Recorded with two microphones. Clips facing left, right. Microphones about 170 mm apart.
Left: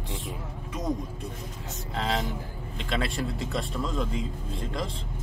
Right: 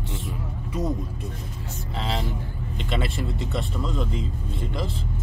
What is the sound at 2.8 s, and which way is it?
Speech, centre (ahead or behind).